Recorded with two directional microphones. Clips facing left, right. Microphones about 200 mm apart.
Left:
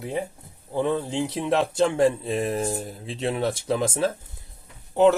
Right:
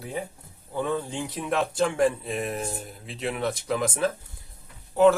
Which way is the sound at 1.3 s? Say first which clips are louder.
Left 3 dB; 25° left (ahead or behind).